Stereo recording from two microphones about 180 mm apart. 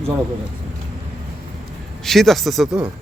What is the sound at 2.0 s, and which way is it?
Speech, centre (ahead or behind).